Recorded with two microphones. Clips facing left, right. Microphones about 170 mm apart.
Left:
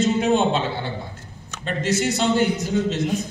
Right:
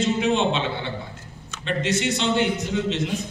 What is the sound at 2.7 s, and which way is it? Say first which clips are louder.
Speech: left 3 dB; 45° left (ahead or behind).